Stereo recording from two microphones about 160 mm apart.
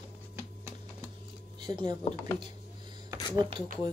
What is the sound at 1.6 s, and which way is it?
Speech, 25° right (ahead or behind).